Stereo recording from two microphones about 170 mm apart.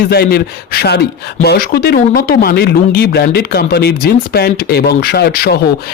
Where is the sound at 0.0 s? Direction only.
65° left (ahead or behind).